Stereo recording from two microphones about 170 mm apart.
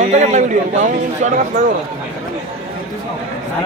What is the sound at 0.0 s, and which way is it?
A man's voice, 45° right (ahead or behind).